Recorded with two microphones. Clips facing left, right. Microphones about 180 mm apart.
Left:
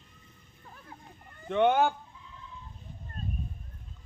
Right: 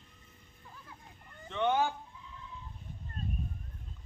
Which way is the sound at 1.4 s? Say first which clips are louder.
Left 6 dB; 60° left (ahead or behind).